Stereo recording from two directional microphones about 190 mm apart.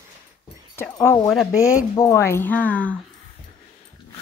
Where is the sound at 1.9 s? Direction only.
15° left (ahead or behind).